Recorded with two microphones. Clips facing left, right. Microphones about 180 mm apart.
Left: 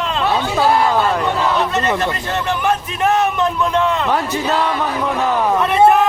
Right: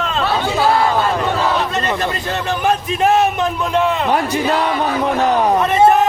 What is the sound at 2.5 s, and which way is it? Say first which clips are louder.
Speech: right 2 dB; 35° right (ahead or behind).